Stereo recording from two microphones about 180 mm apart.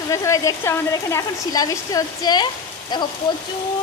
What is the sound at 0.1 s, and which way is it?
Speech, 15° left (ahead or behind).